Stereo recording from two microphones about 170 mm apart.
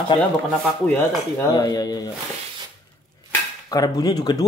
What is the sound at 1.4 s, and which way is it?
Speech, 20° left (ahead or behind).